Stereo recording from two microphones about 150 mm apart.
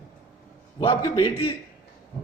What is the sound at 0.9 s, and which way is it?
Speech, 15° left (ahead or behind).